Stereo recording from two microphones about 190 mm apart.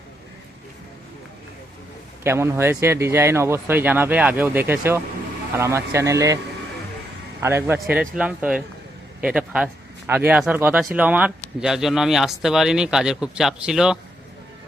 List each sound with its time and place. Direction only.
2.2 s speech: 15° right (ahead or behind)
7.4 s speech: 10° right (ahead or behind)